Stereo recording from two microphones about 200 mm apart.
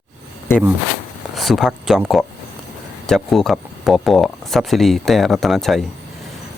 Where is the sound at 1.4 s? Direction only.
Centre (ahead or behind).